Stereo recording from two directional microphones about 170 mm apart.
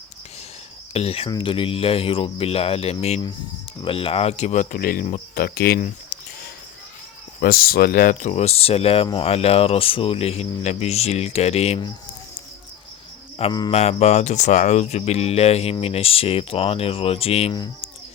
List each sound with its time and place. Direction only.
0.9 s speech: 35° left (ahead or behind); by 5.0 s 55° left (ahead or behind)
5.3 s cricket: 65° left (ahead or behind)
7.4 s speech: 65° left (ahead or behind); by 11.8 s 40° left (ahead or behind)
13.4 s mantra: 25° left (ahead or behind)
13.7 s speech: 40° left (ahead or behind)